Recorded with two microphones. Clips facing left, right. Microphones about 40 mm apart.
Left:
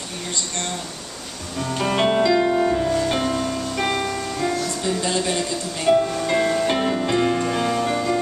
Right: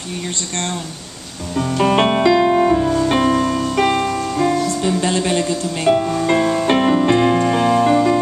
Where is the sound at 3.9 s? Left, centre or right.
Centre.